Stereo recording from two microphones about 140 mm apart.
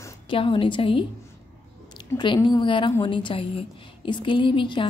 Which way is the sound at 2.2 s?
35° left (ahead or behind).